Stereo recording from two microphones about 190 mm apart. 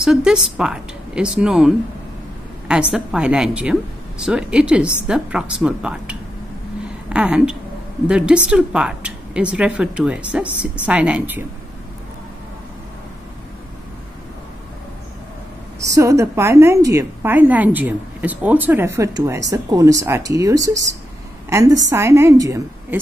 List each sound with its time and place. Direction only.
0.0 s a woman's voice: 5° right (ahead or behind)
2.7 s a woman's voice: 5° right (ahead or behind)
15.8 s a woman's voice: 15° right (ahead or behind)